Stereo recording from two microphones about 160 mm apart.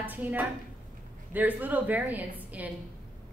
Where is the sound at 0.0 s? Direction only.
10° right (ahead or behind).